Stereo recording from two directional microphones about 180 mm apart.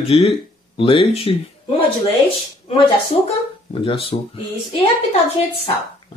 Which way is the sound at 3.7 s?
30° left (ahead or behind).